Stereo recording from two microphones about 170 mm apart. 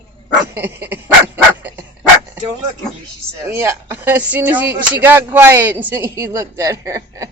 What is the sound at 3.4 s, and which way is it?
Speech, 15° right (ahead or behind).